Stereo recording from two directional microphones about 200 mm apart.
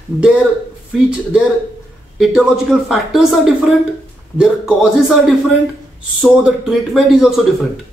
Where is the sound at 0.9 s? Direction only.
5° right (ahead or behind).